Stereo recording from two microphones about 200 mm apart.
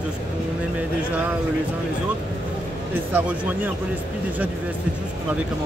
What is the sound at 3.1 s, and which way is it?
Speech, 10° right (ahead or behind).